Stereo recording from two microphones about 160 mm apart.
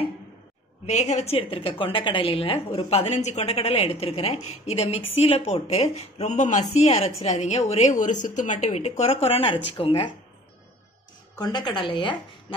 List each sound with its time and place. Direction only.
0.8 s a woman's voice: 45° left (ahead or behind)
11.3 s a woman's voice: 25° left (ahead or behind)